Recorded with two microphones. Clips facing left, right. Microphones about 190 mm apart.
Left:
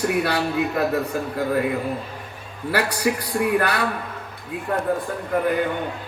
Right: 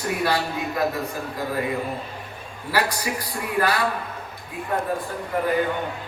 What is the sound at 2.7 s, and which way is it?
A man's voice, 65° left (ahead or behind).